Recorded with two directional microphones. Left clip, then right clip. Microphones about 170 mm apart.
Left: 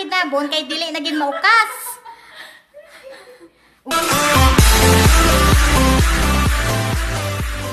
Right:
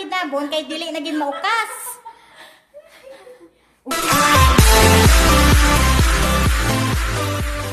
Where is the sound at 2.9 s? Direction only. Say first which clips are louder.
Left 5 dB; 5° left (ahead or behind).